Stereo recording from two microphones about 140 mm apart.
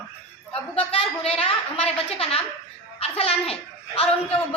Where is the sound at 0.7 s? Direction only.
45° left (ahead or behind).